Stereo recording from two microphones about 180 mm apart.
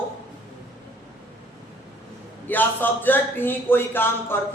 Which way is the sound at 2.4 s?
10° left (ahead or behind).